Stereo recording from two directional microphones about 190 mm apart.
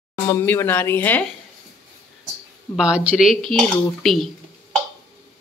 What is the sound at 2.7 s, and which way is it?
Speech, 5° right (ahead or behind).